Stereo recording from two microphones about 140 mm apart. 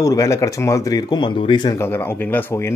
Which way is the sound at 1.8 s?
15° left (ahead or behind).